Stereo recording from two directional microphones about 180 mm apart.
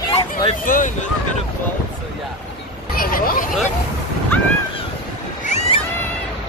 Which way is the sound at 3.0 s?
55° left (ahead or behind).